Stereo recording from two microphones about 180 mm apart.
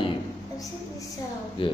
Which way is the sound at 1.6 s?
30° left (ahead or behind).